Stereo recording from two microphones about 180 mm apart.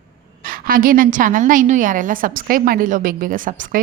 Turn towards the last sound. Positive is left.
turn(degrees=-50)  # may be behind; listen again after turning